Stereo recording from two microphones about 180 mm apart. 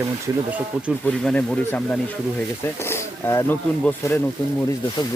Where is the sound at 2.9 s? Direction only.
15° left (ahead or behind).